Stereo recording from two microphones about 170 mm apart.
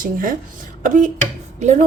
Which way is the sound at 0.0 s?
55° right (ahead or behind).